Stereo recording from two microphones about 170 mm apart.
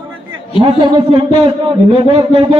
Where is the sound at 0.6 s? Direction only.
30° right (ahead or behind).